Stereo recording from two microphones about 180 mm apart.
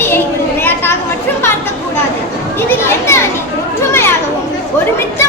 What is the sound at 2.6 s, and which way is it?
Speech, 15° left (ahead or behind).